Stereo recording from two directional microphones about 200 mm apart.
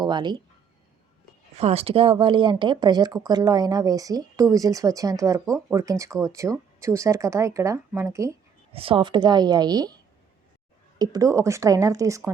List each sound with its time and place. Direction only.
0.0 s speech: 20° right (ahead or behind)
1.5 s speech: 30° right (ahead or behind); by 8.4 s 15° right (ahead or behind)
8.7 s speech: 25° right (ahead or behind)